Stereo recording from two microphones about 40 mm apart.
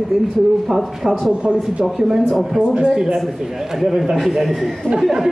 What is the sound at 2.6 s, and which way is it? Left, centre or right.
Speech, right.